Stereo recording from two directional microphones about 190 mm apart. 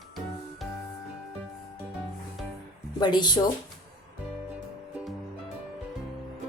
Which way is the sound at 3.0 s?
25° left (ahead or behind).